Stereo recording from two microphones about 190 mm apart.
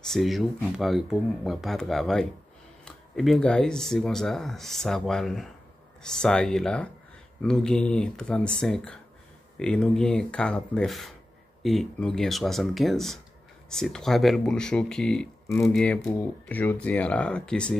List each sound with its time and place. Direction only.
0.1 s speech: centre (ahead or behind)